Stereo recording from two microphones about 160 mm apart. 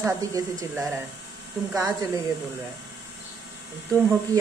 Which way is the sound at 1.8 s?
20° right (ahead or behind).